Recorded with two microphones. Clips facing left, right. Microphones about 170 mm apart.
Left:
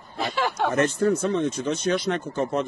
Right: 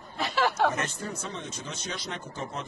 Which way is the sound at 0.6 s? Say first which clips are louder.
Left 9 dB; 55° left (ahead or behind).